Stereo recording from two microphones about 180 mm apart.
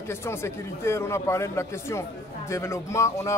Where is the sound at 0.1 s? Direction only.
15° left (ahead or behind).